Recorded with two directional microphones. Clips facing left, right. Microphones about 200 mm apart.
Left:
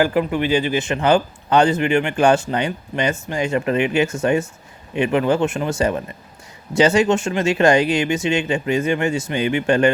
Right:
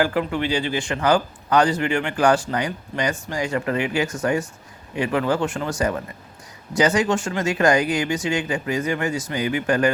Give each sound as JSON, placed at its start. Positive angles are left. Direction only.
{"t": 0.0, "sound": "a man's voice", "side_deg": 15}